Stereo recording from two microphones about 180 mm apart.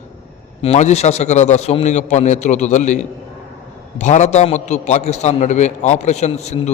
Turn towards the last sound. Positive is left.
turn(degrees=40)  # may be behind; listen again after turning